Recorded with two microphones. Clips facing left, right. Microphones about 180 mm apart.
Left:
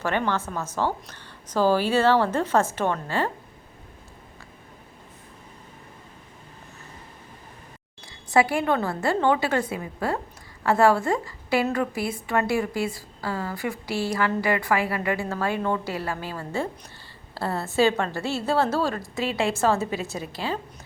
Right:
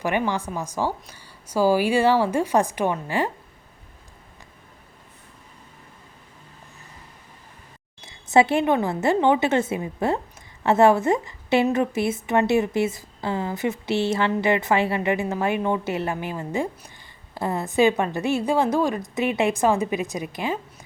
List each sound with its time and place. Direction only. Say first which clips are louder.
0.0 s a woman's voice: right 1 dB; 10° right (ahead or behind)
8.0 s a woman's voice: right 3 dB; 20° right (ahead or behind)